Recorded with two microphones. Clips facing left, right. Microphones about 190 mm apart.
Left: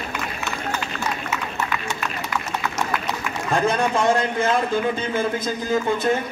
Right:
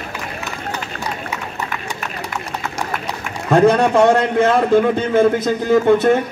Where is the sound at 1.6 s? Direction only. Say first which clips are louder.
Even; 15° right (ahead or behind).